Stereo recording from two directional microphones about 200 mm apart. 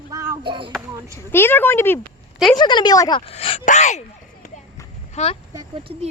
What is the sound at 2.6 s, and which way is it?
Speech, 20° left (ahead or behind).